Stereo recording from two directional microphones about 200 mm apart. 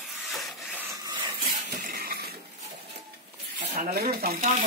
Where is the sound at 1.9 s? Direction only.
50° right (ahead or behind).